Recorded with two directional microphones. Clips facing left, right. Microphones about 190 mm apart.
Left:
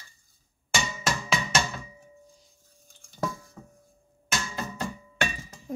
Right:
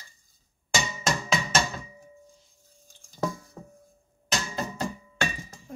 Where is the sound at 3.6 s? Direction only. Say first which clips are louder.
Right 3 dB; 40° right (ahead or behind).